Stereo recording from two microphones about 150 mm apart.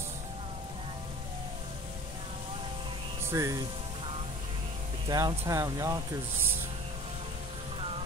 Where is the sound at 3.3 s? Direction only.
20° right (ahead or behind).